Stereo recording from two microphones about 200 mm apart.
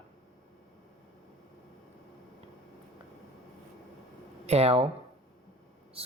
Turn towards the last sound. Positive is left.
turn(degrees=-30)  # may be behind; listen again after turning